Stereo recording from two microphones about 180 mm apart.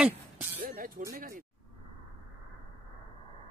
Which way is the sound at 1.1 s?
50° right (ahead or behind).